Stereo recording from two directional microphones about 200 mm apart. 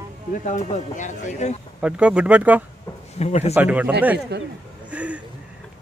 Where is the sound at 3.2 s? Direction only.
35° left (ahead or behind).